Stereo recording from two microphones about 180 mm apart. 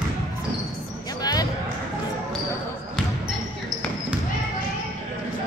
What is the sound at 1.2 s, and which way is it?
Basketball bounce, 20° left (ahead or behind).